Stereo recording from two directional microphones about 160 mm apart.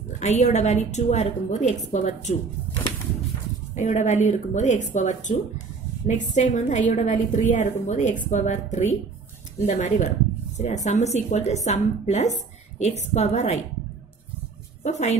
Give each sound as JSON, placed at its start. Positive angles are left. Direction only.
{"t": 0.2, "sound": "a woman's voice", "side_deg": 45}
{"t": 3.7, "sound": "a woman's voice", "side_deg": 50}
{"t": 14.8, "sound": "a woman's voice", "side_deg": 45}